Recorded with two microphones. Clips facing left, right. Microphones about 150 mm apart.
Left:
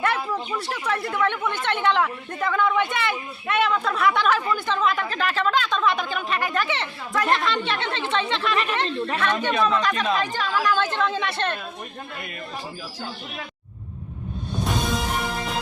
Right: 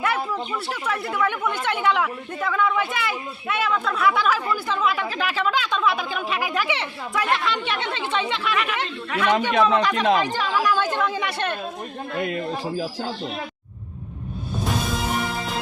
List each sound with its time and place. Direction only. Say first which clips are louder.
0.0 s speech: even; 5° right (ahead or behind)
9.6 s speech: right 3 dB; 75° right (ahead or behind)
9.8 s speech: right 3 dB; 15° right (ahead or behind)
14.6 s music: even; centre (ahead or behind)